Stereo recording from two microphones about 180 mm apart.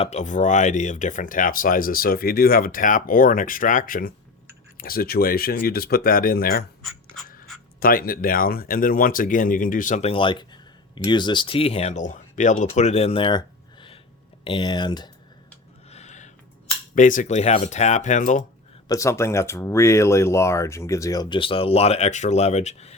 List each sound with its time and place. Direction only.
0.0 s speech: 40° left (ahead or behind); by 6.7 s 55° left (ahead or behind)
7.8 s speech: 55° left (ahead or behind)
10.1 s speech: 25° left (ahead or behind)
15.9 s a sound: 40° left (ahead or behind)
16.9 s speech: 45° left (ahead or behind)
18.9 s speech: 15° left (ahead or behind); by 23.0 s 40° left (ahead or behind)